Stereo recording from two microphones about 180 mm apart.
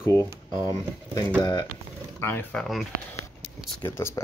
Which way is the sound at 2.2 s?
10° left (ahead or behind).